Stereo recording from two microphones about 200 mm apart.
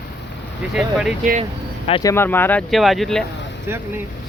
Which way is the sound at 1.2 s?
40° right (ahead or behind).